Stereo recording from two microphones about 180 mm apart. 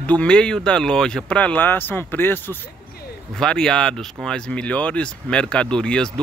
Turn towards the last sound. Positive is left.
turn(degrees=5)  # may be behind; listen again after turning